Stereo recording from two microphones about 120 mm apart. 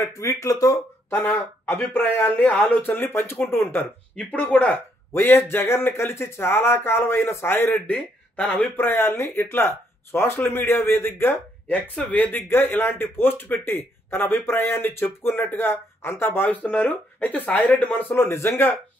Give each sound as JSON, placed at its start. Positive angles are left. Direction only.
{"t": 0.0, "sound": "speech", "side_deg": 30}
{"t": 1.1, "sound": "speech", "side_deg": 15}